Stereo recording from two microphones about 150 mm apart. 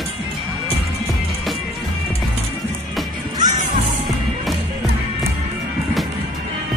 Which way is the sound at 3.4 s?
60° right (ahead or behind).